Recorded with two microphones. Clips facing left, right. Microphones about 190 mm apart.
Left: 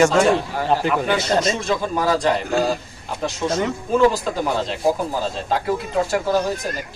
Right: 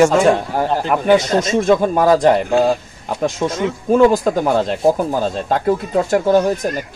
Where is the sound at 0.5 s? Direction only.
50° right (ahead or behind).